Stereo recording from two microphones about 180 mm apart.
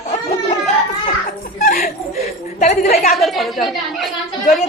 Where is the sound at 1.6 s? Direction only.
45° left (ahead or behind).